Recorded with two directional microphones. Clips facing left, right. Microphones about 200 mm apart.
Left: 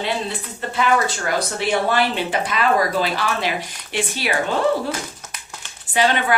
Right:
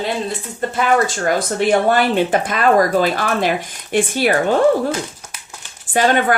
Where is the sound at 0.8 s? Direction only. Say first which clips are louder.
Right 3 dB; 45° right (ahead or behind).